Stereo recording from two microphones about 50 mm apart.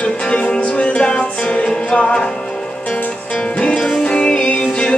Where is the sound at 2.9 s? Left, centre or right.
Left.